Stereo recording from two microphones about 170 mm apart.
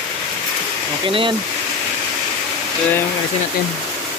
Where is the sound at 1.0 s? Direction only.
30° right (ahead or behind).